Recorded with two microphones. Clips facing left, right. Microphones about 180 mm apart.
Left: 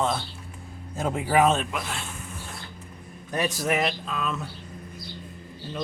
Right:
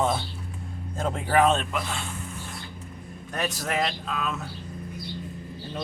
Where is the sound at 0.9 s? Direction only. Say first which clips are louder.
Left 1 dB; 10° left (ahead or behind).